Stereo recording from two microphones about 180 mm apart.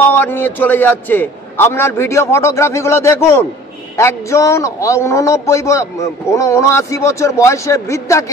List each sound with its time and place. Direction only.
0.0 s a man's voice: 10° left (ahead or behind)